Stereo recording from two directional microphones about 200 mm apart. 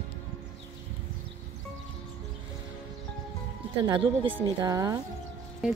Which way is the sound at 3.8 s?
20° right (ahead or behind).